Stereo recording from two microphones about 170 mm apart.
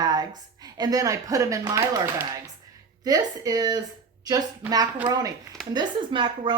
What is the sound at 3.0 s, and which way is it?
A woman's voice, 20° right (ahead or behind).